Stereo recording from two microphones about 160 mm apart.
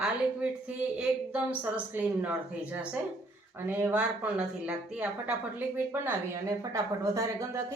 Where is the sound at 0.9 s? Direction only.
10° right (ahead or behind).